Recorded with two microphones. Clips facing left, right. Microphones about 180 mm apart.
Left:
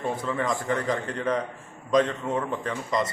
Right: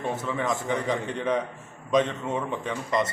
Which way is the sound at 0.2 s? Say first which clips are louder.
Left 1 dB; 5° right (ahead or behind).